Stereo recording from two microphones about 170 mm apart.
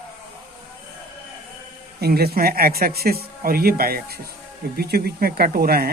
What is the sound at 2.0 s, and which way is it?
Speech, 70° right (ahead or behind).